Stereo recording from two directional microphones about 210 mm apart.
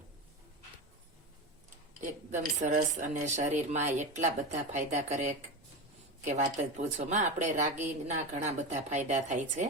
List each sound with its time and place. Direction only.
2.0 s speech: 35° right (ahead or behind)